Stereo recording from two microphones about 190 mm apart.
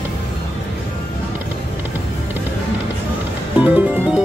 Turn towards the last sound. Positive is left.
turn(degrees=-5)  # may be behind; listen again after turning